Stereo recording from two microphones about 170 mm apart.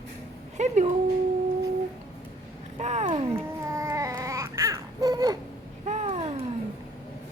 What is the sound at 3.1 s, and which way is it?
Music, 35° right (ahead or behind).